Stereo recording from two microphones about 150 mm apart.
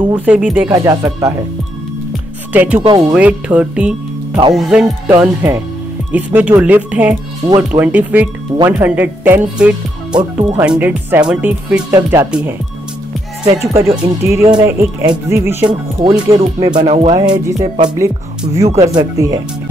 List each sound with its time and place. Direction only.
0.1 s speech: 10° right (ahead or behind)
0.7 s speech: 20° right (ahead or behind)
2.5 s speech: 10° right (ahead or behind)
7.4 s speech: 25° right (ahead or behind)
7.8 s speech: 10° right (ahead or behind)
13.5 s speech: 20° right (ahead or behind)
16.8 s speech: 45° right (ahead or behind)
17.1 s speech: 25° right (ahead or behind)